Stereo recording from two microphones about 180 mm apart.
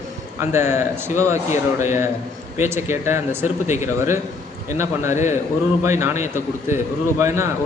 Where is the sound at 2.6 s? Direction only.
15° right (ahead or behind).